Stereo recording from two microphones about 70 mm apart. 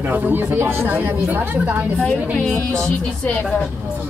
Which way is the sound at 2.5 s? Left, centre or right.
Right.